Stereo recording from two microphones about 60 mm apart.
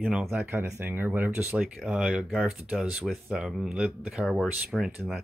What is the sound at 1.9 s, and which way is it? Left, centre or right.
Speech, centre.